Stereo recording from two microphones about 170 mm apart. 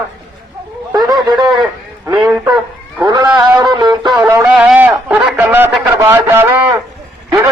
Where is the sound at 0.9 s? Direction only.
25° right (ahead or behind).